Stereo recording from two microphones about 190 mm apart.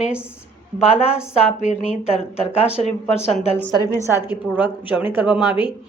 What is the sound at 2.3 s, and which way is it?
Speech, 30° left (ahead or behind).